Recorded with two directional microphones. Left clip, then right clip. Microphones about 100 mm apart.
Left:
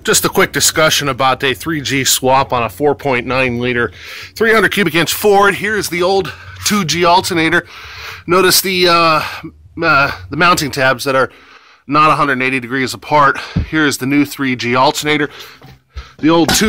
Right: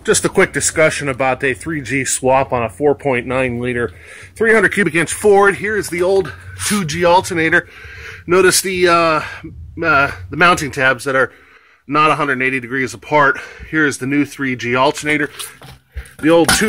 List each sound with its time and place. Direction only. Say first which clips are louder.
0.0 s speech: left 1 dB; 20° left (ahead or behind)
5.8 s a man's voice: left 1 dB; 45° left (ahead or behind)
16.2 s music: even; 60° left (ahead or behind)